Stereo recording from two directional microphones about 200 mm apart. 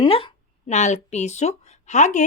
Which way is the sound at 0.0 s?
25° left (ahead or behind).